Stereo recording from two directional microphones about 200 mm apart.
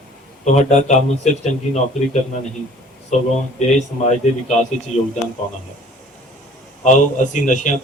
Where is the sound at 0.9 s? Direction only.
35° left (ahead or behind).